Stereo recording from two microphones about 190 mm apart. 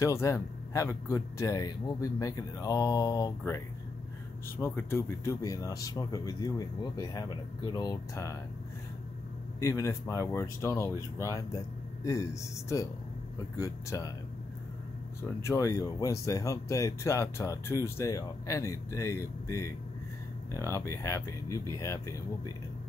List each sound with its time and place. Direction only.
0.0 s speech: 15° left (ahead or behind)
9.6 s speech: 15° left (ahead or behind)
15.2 s speech: 15° left (ahead or behind)